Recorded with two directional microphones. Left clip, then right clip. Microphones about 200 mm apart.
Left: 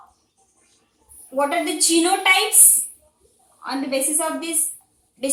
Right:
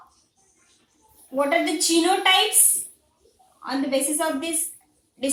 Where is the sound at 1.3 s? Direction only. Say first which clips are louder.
Even; 15° right (ahead or behind).